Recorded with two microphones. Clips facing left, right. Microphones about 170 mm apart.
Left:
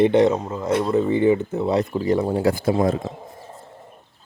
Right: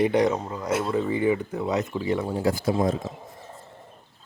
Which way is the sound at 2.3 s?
65° left (ahead or behind).